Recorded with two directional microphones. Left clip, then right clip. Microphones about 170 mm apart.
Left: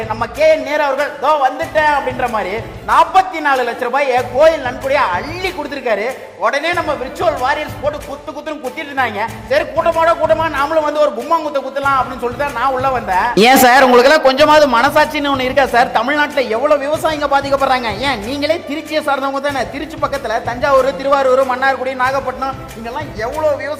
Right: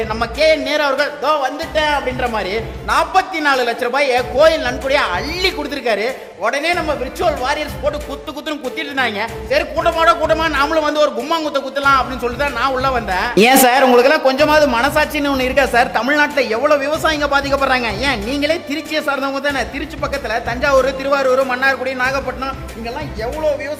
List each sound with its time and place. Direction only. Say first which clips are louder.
0.1 s music: left 3 dB; 25° right (ahead or behind)
9.0 s music: left 2 dB; 20° right (ahead or behind)
9.8 s music: right 1 dB; 30° right (ahead or behind)
13.3 s a man's voice: left 2 dB; centre (ahead or behind)